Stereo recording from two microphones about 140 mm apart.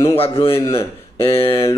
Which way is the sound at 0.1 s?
40° left (ahead or behind).